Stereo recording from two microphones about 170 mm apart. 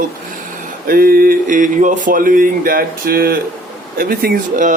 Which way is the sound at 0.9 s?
60° right (ahead or behind).